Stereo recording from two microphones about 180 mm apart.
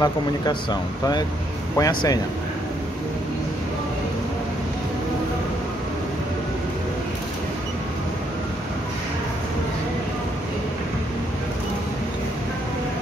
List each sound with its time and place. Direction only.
0.0 s speech: 25° left (ahead or behind)